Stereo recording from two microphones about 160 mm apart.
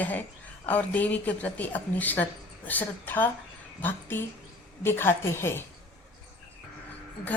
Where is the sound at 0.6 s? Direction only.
10° left (ahead or behind).